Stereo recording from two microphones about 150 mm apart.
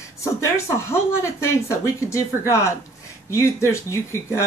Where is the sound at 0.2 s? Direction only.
20° left (ahead or behind).